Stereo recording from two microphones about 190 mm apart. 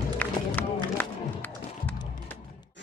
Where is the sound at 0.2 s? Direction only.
10° left (ahead or behind).